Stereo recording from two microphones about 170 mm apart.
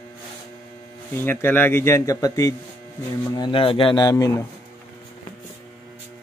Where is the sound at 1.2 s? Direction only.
15° left (ahead or behind).